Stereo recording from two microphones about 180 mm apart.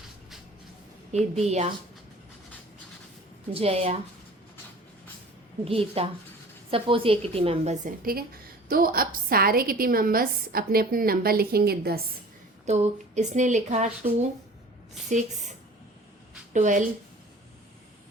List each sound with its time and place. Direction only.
1.1 s a woman's voice: 40° right (ahead or behind)
3.5 s a woman's voice: 35° right (ahead or behind)
5.6 s a woman's voice: 30° right (ahead or behind)
8.7 s a woman's voice: 55° right (ahead or behind)
12.6 s a woman's voice: 40° right (ahead or behind)
15.1 s a woman's voice: 40° right (ahead or behind)